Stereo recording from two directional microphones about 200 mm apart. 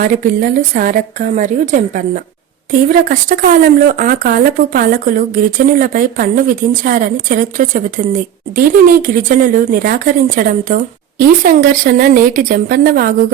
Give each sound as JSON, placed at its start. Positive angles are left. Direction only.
{"t": 0.0, "sound": "a woman's voice", "side_deg": -40}